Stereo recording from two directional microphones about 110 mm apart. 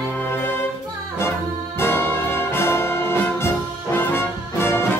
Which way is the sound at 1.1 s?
25° left (ahead or behind).